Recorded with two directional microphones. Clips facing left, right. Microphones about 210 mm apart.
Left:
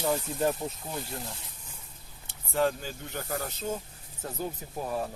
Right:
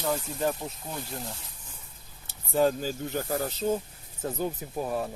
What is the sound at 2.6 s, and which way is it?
Speech, 35° right (ahead or behind).